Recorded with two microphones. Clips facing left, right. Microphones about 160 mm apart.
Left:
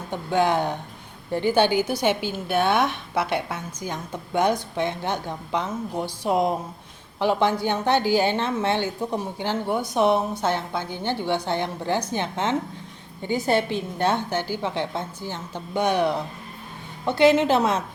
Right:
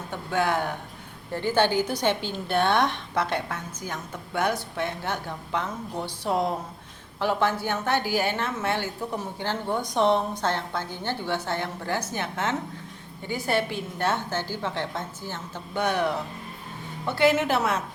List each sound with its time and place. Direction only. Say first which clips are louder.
0.1 s a woman's voice: left 4 dB; 20° left (ahead or behind)